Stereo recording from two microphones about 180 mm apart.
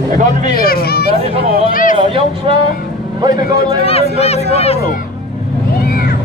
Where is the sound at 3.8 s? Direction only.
35° left (ahead or behind).